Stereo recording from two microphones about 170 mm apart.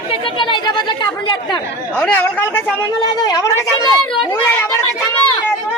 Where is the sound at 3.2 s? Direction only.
25° left (ahead or behind).